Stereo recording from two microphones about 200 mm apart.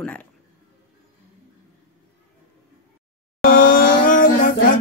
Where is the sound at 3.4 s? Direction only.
45° left (ahead or behind).